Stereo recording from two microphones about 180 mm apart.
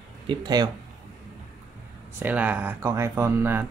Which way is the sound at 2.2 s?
10° right (ahead or behind).